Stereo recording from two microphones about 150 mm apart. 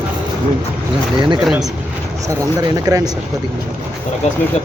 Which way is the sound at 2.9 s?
25° right (ahead or behind).